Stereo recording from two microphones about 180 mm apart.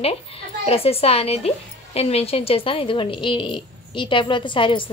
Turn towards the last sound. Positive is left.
turn(degrees=30)  # may be behind; listen again after turning